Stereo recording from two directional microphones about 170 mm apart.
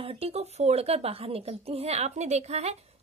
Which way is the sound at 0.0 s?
35° right (ahead or behind).